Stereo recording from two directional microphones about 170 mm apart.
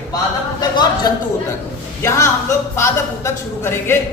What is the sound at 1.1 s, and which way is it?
A man's voice, 20° left (ahead or behind).